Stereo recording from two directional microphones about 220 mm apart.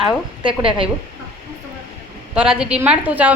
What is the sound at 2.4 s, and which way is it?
Speech, 5° right (ahead or behind).